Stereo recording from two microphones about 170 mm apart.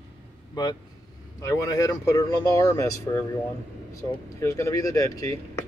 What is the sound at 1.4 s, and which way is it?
Speech, 20° left (ahead or behind).